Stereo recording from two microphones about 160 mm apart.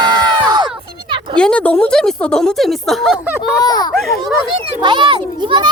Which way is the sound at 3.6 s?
25° left (ahead or behind).